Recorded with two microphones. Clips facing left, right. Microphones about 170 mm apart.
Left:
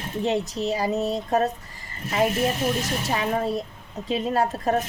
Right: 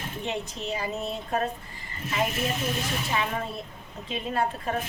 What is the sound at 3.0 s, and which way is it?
A woman's voice, 40° left (ahead or behind).